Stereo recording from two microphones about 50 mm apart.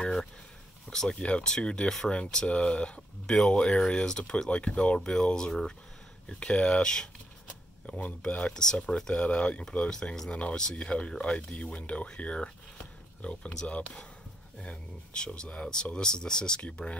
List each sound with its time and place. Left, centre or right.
0.0 s a sound: centre
0.8 s speech: centre
8.3 s speech: left
8.5 s speech: centre